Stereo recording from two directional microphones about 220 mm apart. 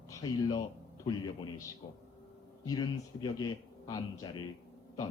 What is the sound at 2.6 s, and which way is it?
A man's voice, 20° left (ahead or behind).